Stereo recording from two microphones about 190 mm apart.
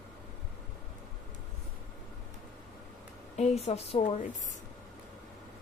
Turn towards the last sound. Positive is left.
turn(degrees=30)  # may be behind; listen again after turning